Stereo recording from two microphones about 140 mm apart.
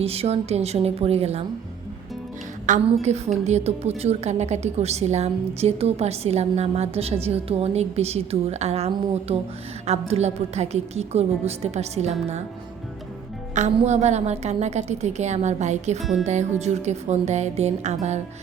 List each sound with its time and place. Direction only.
0.0 s a woman's voice: 45° right (ahead or behind)
2.8 s a woman's voice: 50° right (ahead or behind)
13.5 s a woman's voice: 55° right (ahead or behind)